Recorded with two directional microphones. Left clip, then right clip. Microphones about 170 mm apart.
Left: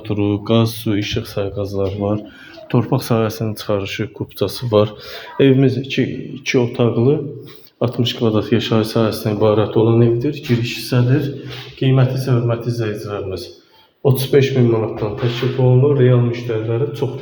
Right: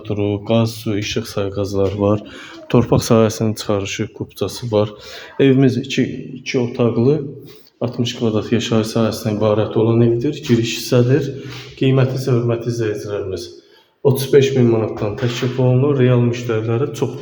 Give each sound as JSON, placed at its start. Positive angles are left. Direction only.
{"t": 0.1, "sound": "speech", "side_deg": 0}
{"t": 1.0, "sound": "a man's voice", "side_deg": -15}
{"t": 4.4, "sound": "speech", "side_deg": 5}
{"t": 5.4, "sound": "speech", "side_deg": -10}
{"t": 5.6, "sound": "a man's voice", "side_deg": -20}
{"t": 6.4, "sound": "a man's voice", "side_deg": 20}
{"t": 6.7, "sound": "speech", "side_deg": 0}
{"t": 7.8, "sound": "speech", "side_deg": 15}
{"t": 10.2, "sound": "a man's voice", "side_deg": -15}
{"t": 12.1, "sound": "speech", "side_deg": -15}
{"t": 12.5, "sound": "speech", "side_deg": 0}
{"t": 14.7, "sound": "a man's voice", "side_deg": -25}